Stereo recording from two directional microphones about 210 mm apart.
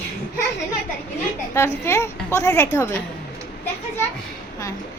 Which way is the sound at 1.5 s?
10° left (ahead or behind).